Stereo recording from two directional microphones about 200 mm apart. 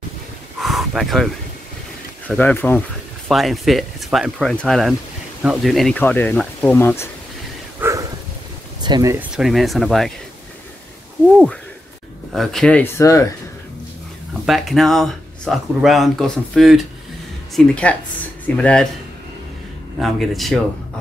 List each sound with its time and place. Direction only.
0.6 s a sound: centre (ahead or behind)
2.2 s speech: 10° left (ahead or behind)
7.8 s a sound: 15° right (ahead or behind)
8.8 s speech: 20° right (ahead or behind)
9.3 s speech: centre (ahead or behind)
12.3 s speech: centre (ahead or behind)
14.4 s speech: centre (ahead or behind)
20.0 s speech: centre (ahead or behind)